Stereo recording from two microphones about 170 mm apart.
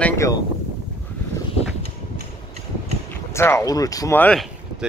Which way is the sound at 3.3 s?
15° left (ahead or behind).